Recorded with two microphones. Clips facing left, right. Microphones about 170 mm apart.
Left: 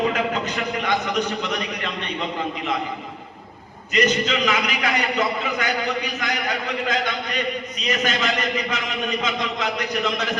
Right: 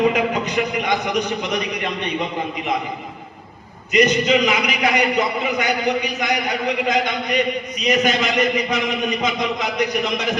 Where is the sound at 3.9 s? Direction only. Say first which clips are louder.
Right 5 dB; 15° right (ahead or behind).